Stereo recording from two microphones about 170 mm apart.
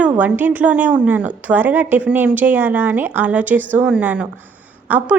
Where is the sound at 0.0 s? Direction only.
10° right (ahead or behind).